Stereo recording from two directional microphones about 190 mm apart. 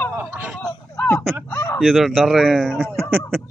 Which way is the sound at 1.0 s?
5° left (ahead or behind).